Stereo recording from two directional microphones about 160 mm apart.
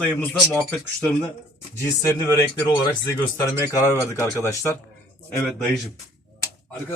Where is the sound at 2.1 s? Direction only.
20° left (ahead or behind).